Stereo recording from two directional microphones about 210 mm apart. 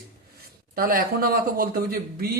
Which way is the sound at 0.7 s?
45° right (ahead or behind).